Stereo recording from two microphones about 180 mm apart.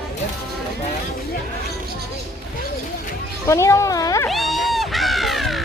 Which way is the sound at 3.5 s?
15° left (ahead or behind).